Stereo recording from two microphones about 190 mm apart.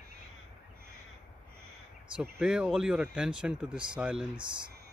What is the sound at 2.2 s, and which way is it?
Speech, 5° right (ahead or behind).